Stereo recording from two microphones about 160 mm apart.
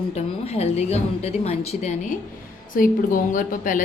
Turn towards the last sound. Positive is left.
turn(degrees=55)  # may be behind; listen again after turning